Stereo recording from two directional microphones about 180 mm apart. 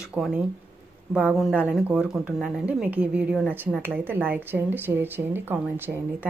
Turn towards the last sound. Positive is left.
turn(degrees=-10)  # may be behind; listen again after turning